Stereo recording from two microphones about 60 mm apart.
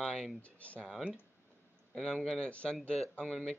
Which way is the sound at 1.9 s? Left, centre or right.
Centre.